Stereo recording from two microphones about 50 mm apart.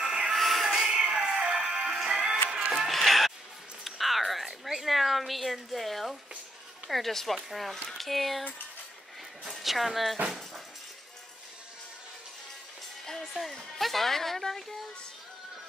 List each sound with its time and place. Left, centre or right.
0.0 s music: centre
0.3 s music: centre
2.9 s music: centre
3.8 s cat: centre
6.9 s a woman's voice: centre
13.0 s a woman's voice: centre